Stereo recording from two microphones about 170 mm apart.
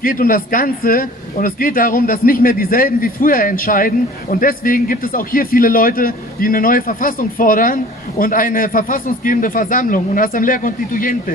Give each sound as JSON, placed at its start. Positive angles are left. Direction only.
{"t": 0.0, "sound": "speech", "side_deg": 55}